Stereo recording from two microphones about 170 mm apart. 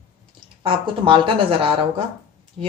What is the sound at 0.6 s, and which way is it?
A woman's voice, 30° right (ahead or behind).